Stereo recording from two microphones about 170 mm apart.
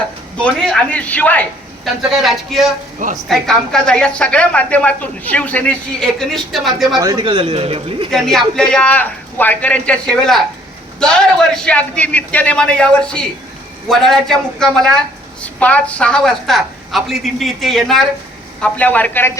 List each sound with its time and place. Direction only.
0.3 s a man's voice: 5° left (ahead or behind)
6.9 s a man's voice: 25° right (ahead or behind)
8.1 s a woman's voice: centre (ahead or behind)